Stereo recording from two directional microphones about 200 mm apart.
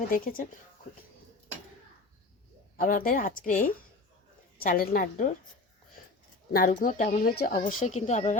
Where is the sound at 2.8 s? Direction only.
45° left (ahead or behind).